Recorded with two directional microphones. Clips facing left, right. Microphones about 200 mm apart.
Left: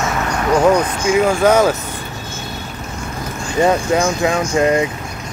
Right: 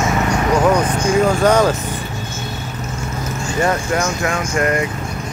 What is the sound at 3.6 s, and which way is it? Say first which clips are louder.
Speech: left 4 dB; 15° left (ahead or behind).